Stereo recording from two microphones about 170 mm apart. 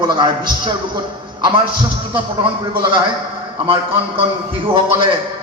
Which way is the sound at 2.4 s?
30° right (ahead or behind).